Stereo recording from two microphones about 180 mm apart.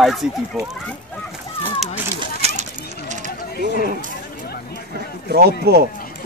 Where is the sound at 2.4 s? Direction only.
35° right (ahead or behind).